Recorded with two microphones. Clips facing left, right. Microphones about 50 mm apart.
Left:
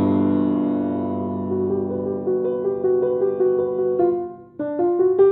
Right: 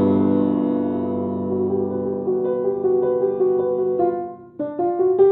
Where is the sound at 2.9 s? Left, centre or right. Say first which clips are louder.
Even; centre.